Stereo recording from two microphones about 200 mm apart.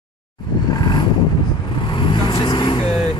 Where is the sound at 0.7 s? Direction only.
20° left (ahead or behind).